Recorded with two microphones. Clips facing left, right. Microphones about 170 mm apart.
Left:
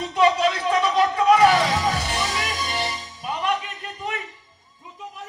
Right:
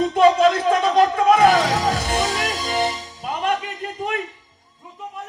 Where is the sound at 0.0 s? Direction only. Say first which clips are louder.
Right 5 dB; 45° right (ahead or behind).